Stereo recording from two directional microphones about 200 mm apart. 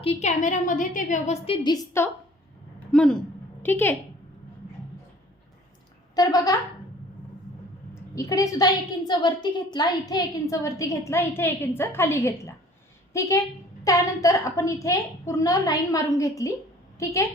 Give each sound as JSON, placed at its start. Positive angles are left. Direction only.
{"t": 0.0, "sound": "a woman's voice", "side_deg": 30}
{"t": 1.6, "sound": "a woman's voice", "side_deg": 15}
{"t": 2.9, "sound": "a woman's voice", "side_deg": 5}
{"t": 6.1, "sound": "a woman's voice", "side_deg": 20}
{"t": 8.1, "sound": "a woman's voice", "side_deg": 15}